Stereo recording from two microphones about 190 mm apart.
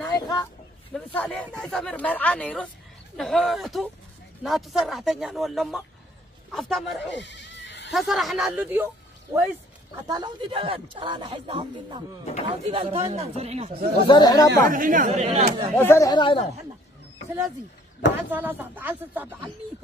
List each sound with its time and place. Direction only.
0.0 s a sound: 20° left (ahead or behind)
0.9 s speech: 5° left (ahead or behind)
7.1 s goat: 65° left (ahead or behind)
7.9 s a man's voice: centre (ahead or behind)
10.0 s speech: 25° right (ahead or behind)
14.0 s speech: 20° left (ahead or behind)
14.7 s speech: 45° right (ahead or behind)
15.7 s speech: 10° left (ahead or behind)
18.3 s speech: 10° right (ahead or behind)